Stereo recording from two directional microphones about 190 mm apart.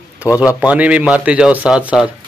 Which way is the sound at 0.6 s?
5° right (ahead or behind).